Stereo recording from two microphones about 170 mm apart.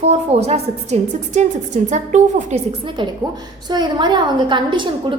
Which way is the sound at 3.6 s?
25° right (ahead or behind).